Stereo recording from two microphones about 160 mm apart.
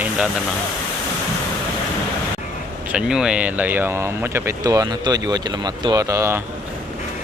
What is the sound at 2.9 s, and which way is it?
Speech, 5° right (ahead or behind).